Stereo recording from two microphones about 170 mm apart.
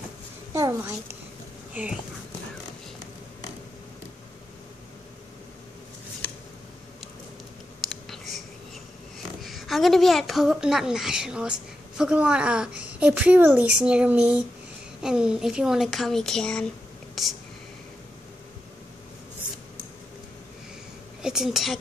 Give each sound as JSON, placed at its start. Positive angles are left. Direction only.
{"t": 0.5, "sound": "a sound", "side_deg": -20}
{"t": 1.7, "sound": "speech", "side_deg": -5}
{"t": 7.9, "sound": "a sound", "side_deg": 0}
{"t": 9.4, "sound": "a woman's voice", "side_deg": 0}
{"t": 17.1, "sound": "whispering", "side_deg": 0}
{"t": 21.2, "sound": "a woman's voice", "side_deg": -5}